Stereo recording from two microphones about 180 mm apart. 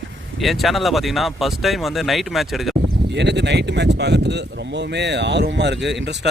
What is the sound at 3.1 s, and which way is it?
Speech, 70° right (ahead or behind).